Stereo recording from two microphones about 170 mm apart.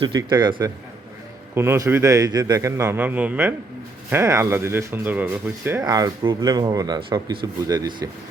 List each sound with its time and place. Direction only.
0.0 s speech: 25° right (ahead or behind)
1.5 s a man's voice: 15° right (ahead or behind)
5.8 s speech: 25° right (ahead or behind)